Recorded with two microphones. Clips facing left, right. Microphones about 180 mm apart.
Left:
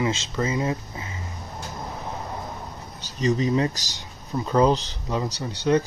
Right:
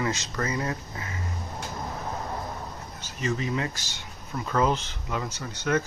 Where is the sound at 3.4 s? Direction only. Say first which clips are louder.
Left 7 dB; 30° left (ahead or behind).